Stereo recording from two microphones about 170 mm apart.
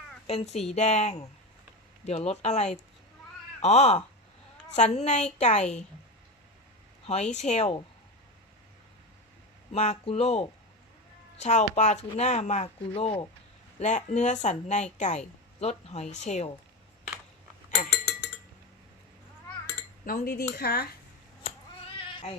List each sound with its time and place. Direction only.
0.3 s a woman's voice: 40° left (ahead or behind)
7.1 s speech: 40° left (ahead or behind)
9.7 s a woman's voice: 40° left (ahead or behind)
17.7 s a sound: 15° left (ahead or behind)
20.1 s speech: 60° left (ahead or behind)